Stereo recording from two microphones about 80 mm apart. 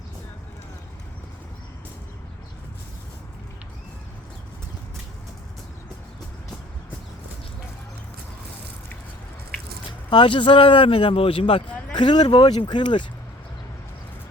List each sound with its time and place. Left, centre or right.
10.1 s speech: left
11.9 s speech: left